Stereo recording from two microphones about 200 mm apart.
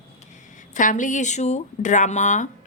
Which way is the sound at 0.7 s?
40° left (ahead or behind).